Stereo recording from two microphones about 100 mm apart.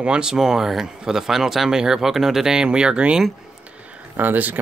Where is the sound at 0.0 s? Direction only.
10° right (ahead or behind).